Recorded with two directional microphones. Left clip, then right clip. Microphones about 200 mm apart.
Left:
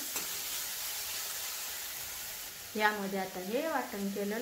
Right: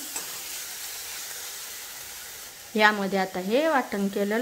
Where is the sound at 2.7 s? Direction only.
50° right (ahead or behind).